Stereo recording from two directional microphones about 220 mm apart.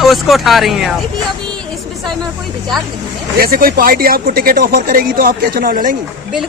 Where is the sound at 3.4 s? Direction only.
40° right (ahead or behind).